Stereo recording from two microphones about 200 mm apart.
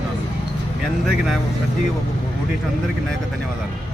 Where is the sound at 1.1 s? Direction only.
Centre (ahead or behind).